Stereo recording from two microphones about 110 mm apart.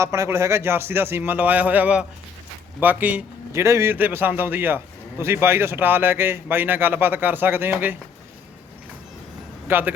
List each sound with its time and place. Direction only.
0.0 s a man's voice: 30° right (ahead or behind)
3.5 s a man's voice: 25° right (ahead or behind)
9.6 s speech: 20° right (ahead or behind)